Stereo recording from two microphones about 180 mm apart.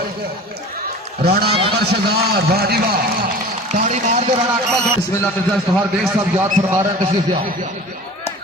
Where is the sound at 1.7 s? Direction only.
60° right (ahead or behind).